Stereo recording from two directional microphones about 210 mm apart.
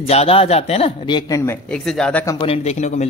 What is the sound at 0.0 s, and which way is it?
A man's voice, 30° left (ahead or behind).